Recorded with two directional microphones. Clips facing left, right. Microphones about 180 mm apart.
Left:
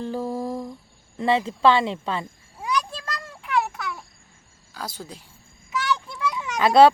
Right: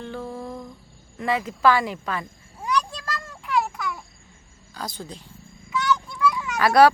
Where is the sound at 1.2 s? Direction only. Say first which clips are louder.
Left 2 dB; 25° left (ahead or behind).